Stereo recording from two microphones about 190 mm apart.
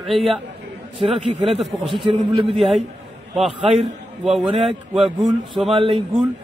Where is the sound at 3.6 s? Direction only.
30° right (ahead or behind).